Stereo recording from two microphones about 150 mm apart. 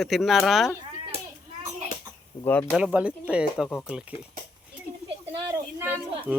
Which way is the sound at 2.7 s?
5° right (ahead or behind).